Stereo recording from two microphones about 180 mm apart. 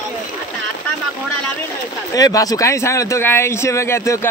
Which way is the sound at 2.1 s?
20° left (ahead or behind).